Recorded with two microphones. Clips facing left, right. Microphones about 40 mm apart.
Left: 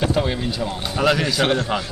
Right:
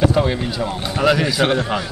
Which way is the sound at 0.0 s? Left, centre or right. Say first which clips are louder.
Right 4 dB; centre.